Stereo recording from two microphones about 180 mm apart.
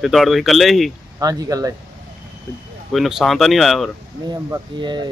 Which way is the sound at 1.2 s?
20° right (ahead or behind).